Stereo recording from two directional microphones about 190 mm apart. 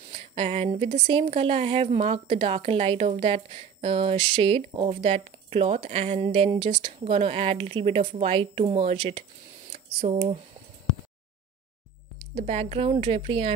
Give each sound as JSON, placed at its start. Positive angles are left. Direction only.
{"t": 0.1, "sound": "a woman's voice", "side_deg": -30}
{"t": 12.4, "sound": "a woman's voice", "side_deg": -30}